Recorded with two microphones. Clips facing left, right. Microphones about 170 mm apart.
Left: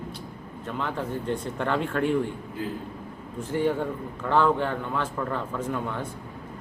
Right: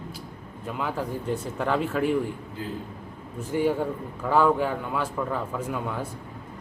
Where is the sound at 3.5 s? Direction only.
10° right (ahead or behind).